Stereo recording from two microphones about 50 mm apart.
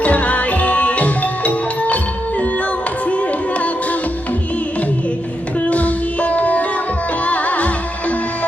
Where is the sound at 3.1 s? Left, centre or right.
Left.